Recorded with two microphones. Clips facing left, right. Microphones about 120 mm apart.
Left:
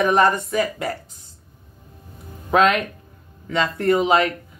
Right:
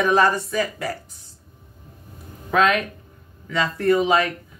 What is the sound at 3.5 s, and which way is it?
Speech, 25° left (ahead or behind).